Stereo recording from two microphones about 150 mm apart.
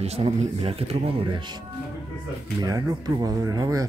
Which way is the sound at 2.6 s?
25° right (ahead or behind).